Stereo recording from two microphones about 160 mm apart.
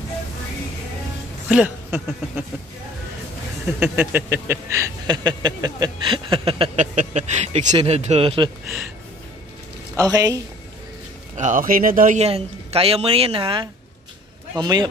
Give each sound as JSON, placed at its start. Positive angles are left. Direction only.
{"t": 1.5, "sound": "speech", "side_deg": -10}
{"t": 3.6, "sound": "a woman's voice", "side_deg": -10}
{"t": 9.9, "sound": "speech", "side_deg": -25}
{"t": 11.3, "sound": "speech", "side_deg": -50}
{"t": 12.2, "sound": "a woman's voice", "side_deg": -40}